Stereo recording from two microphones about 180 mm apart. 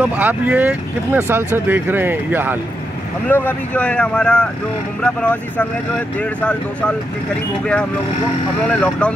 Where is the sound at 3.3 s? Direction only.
10° left (ahead or behind).